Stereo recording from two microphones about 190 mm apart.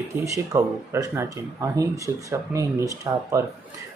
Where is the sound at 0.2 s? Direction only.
15° right (ahead or behind).